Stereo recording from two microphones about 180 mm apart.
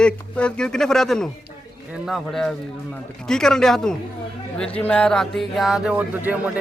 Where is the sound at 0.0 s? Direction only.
5° left (ahead or behind).